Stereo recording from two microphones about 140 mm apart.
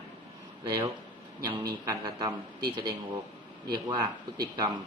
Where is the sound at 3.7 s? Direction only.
30° right (ahead or behind).